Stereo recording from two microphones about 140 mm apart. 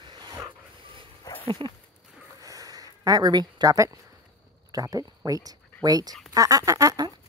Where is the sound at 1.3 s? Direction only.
25° left (ahead or behind).